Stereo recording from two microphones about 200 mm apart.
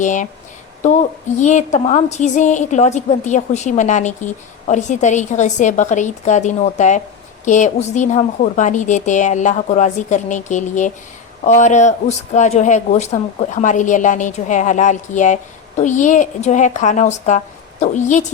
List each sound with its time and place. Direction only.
0.0 s a woman's voice: 40° left (ahead or behind)